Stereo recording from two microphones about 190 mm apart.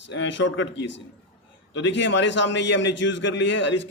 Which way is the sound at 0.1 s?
70° left (ahead or behind).